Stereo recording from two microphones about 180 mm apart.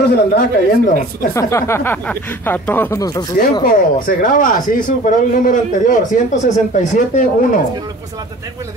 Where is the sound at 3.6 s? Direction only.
50° left (ahead or behind).